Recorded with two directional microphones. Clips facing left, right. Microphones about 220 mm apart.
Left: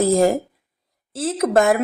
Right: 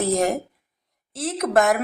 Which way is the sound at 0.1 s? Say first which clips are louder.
Left 5 dB; 30° left (ahead or behind).